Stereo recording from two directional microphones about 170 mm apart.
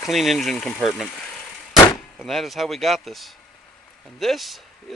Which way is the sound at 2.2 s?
Centre (ahead or behind).